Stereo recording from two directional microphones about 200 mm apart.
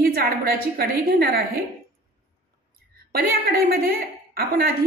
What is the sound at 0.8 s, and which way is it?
Speech, 50° right (ahead or behind).